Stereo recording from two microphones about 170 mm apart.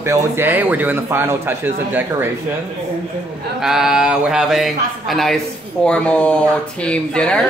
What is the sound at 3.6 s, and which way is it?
Speech, 5° right (ahead or behind).